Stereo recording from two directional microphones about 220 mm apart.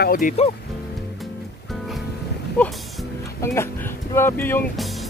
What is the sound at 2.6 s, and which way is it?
Speech, 5° left (ahead or behind).